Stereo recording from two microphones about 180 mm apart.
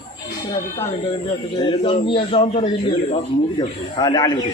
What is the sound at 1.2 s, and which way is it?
A man's voice, 30° left (ahead or behind).